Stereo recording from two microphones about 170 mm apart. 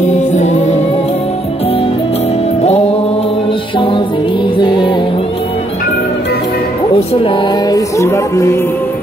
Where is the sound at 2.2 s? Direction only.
40° left (ahead or behind).